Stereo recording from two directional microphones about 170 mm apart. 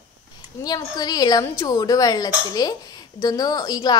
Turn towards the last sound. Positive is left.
turn(degrees=25)  # may be behind; listen again after turning